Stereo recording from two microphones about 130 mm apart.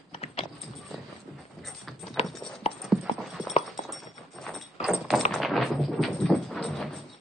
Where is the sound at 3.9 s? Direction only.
Centre (ahead or behind).